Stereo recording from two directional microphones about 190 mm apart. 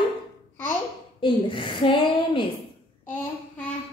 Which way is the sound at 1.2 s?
25° left (ahead or behind).